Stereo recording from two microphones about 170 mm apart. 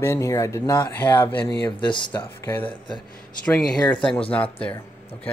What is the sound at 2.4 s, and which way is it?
Speech, 15° left (ahead or behind).